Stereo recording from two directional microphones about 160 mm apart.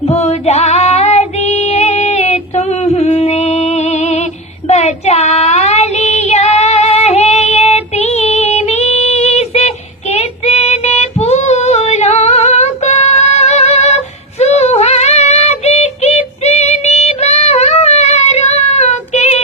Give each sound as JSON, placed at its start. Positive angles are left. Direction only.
{"t": 0.1, "sound": "female singing", "side_deg": 40}
{"t": 4.7, "sound": "child singing", "side_deg": 45}